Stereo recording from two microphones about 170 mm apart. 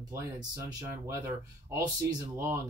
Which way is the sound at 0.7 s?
20° right (ahead or behind).